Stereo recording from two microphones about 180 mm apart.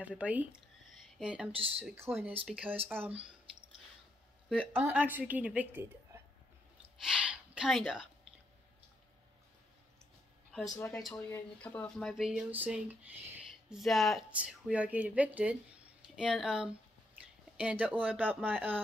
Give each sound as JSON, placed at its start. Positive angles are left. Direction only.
{"t": 0.0, "sound": "speech", "side_deg": -10}
{"t": 1.5, "sound": "speech", "side_deg": -30}
{"t": 2.0, "sound": "a woman's voice", "side_deg": -15}
{"t": 4.5, "sound": "a woman's voice", "side_deg": -10}
{"t": 7.0, "sound": "a sound", "side_deg": -5}
{"t": 10.5, "sound": "a woman's voice", "side_deg": 5}